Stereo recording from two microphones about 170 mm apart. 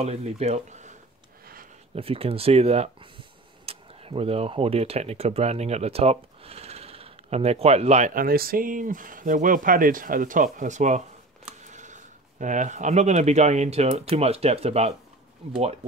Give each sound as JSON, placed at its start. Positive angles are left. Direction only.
{"t": 0.0, "sound": "speech", "side_deg": -40}
{"t": 2.0, "sound": "speech", "side_deg": -35}